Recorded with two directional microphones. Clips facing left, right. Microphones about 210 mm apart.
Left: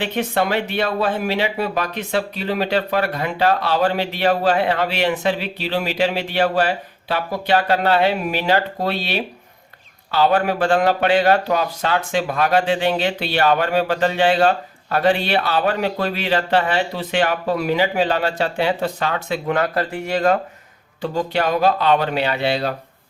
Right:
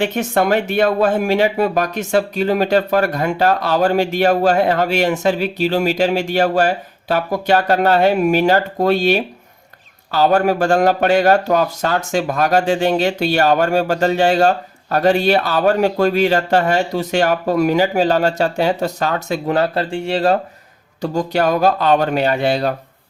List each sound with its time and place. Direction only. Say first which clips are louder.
0.0 s speech: right 4 dB; 45° right (ahead or behind); by 20.4 s 30° right (ahead or behind)
21.0 s speech: right 3 dB; 45° right (ahead or behind)